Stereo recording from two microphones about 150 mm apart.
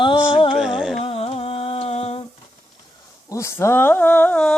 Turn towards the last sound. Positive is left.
turn(degrees=10)  # may be behind; listen again after turning